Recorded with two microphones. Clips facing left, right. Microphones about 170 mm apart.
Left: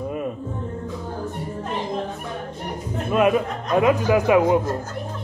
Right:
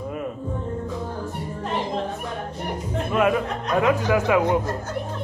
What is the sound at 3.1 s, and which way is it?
Speech, 20° left (ahead or behind).